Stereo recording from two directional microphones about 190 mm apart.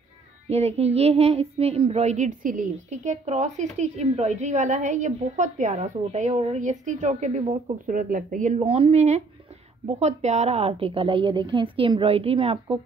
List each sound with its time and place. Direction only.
0.5 s child singing: 35° right (ahead or behind)
9.8 s a woman's voice: 35° right (ahead or behind)